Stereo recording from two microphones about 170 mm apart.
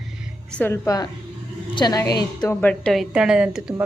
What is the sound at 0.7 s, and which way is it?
Speech, 20° left (ahead or behind).